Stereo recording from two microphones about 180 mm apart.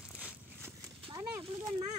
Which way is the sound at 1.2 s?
20° right (ahead or behind).